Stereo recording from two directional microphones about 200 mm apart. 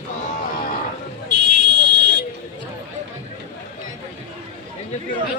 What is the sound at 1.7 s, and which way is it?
Buzzer, 60° right (ahead or behind).